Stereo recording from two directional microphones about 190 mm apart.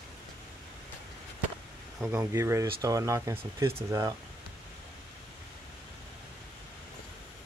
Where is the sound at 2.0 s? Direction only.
15° right (ahead or behind).